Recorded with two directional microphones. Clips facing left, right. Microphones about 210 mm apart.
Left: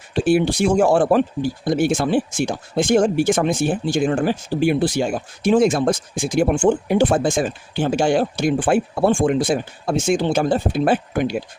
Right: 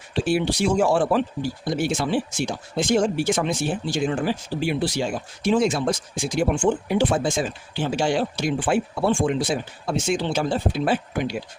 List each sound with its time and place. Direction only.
0.1 s speech: 50° left (ahead or behind)